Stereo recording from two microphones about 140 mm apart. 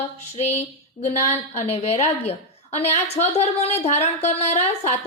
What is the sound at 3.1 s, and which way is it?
A woman's voice, 50° left (ahead or behind).